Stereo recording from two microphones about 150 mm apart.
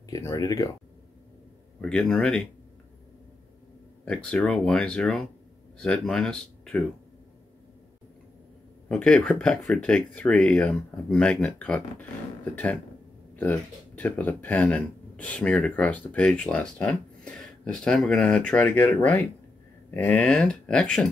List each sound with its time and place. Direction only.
0.1 s speech: 20° left (ahead or behind)
1.8 s speech: 5° left (ahead or behind)
4.0 s speech: 5° left (ahead or behind)
8.8 s speech: 5° left (ahead or behind)